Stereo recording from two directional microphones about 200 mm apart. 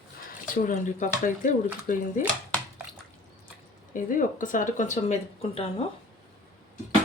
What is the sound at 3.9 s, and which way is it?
Speech, 40° left (ahead or behind).